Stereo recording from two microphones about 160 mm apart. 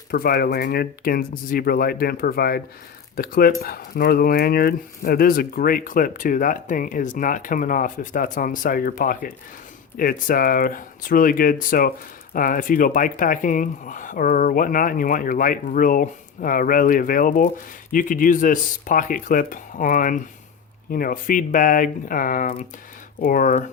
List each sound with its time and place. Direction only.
0.1 s speech: 70° left (ahead or behind)